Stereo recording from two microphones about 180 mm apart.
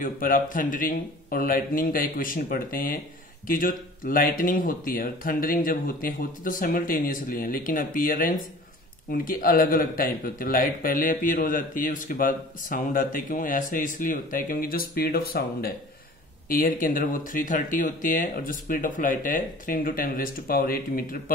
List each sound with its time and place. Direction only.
0.0 s speech: 50° left (ahead or behind)